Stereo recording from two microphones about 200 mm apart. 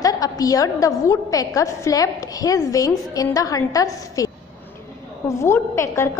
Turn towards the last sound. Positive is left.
turn(degrees=15)  # may be behind; listen again after turning